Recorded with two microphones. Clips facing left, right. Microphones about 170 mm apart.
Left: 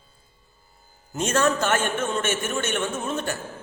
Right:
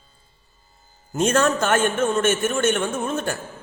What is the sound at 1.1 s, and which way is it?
A man's voice, 55° right (ahead or behind).